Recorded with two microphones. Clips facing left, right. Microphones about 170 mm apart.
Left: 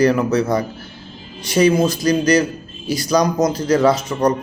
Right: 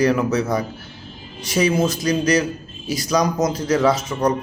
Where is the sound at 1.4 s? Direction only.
30° left (ahead or behind).